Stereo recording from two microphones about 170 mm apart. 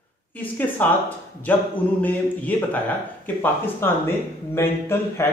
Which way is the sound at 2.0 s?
10° left (ahead or behind).